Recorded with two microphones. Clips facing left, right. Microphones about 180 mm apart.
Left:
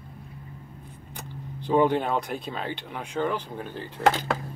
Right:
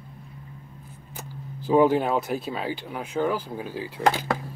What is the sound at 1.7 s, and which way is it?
Speech, 5° right (ahead or behind).